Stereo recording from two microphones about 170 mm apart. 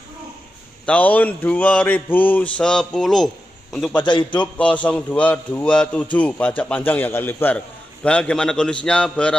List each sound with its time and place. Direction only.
0.8 s a man's voice: 10° left (ahead or behind)
4.0 s a man's voice: 25° left (ahead or behind)
4.4 s a man's voice: 5° left (ahead or behind)